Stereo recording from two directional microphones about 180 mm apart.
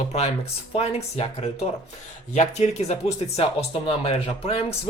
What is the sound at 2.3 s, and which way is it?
Speech, 40° left (ahead or behind).